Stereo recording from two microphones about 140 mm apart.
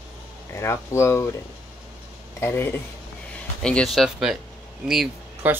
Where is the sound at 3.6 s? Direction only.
5° left (ahead or behind).